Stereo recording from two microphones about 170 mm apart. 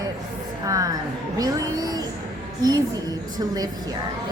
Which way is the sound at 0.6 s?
20° right (ahead or behind).